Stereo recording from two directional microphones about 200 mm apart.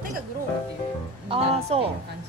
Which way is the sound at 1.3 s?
30° right (ahead or behind).